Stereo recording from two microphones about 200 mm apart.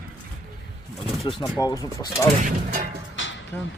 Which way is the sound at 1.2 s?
15° left (ahead or behind).